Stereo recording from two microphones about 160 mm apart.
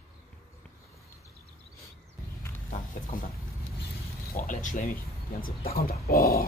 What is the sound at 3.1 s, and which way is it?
Speech, 60° left (ahead or behind).